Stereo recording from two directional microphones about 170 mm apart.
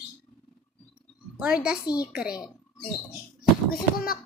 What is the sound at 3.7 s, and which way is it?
Speech, 60° left (ahead or behind).